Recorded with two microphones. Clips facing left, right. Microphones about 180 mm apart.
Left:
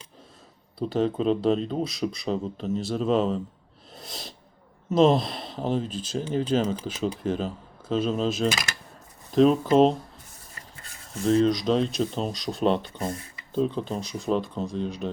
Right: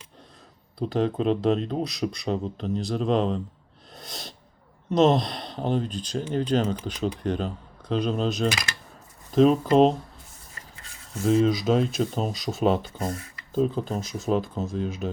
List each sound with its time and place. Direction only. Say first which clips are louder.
0.8 s speech: even; centre (ahead or behind)
3.9 s sneeze: even; centre (ahead or behind)
4.9 s speech: even; 5° left (ahead or behind)
11.2 s speech: even; 5° right (ahead or behind)
13.1 s speech: even; 30° left (ahead or behind)
13.5 s speech: right 1 dB; 5° right (ahead or behind)